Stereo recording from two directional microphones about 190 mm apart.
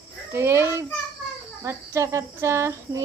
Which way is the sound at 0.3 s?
15° right (ahead or behind).